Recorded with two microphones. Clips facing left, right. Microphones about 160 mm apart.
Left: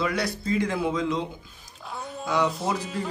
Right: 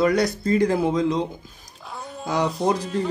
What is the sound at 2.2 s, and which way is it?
Speech, 35° right (ahead or behind).